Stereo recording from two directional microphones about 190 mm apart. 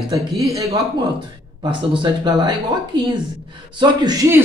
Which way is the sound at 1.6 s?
25° right (ahead or behind).